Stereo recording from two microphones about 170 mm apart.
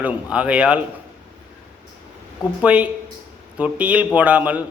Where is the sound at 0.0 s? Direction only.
10° right (ahead or behind).